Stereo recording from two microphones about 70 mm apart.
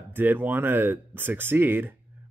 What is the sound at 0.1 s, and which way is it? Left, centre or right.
Speech, right.